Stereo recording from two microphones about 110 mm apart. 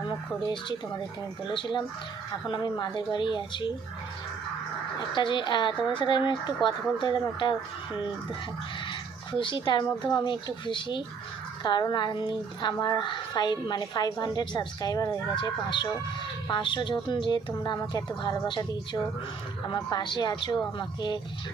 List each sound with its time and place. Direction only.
1.5 s speech: 45° left (ahead or behind)
5.1 s speech: 45° left (ahead or behind)
9.4 s a woman's voice: 45° left (ahead or behind)
19.7 s speech: 45° left (ahead or behind)